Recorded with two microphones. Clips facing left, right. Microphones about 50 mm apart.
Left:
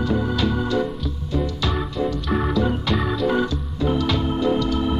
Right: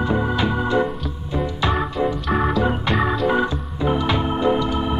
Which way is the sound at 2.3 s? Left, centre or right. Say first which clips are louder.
Right 1 dB; centre.